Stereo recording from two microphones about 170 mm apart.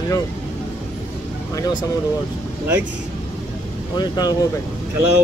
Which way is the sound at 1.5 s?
25° left (ahead or behind).